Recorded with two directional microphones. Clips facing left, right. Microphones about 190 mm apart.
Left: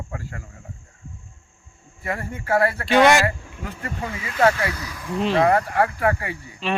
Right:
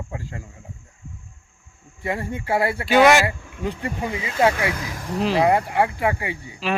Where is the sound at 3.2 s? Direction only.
15° right (ahead or behind).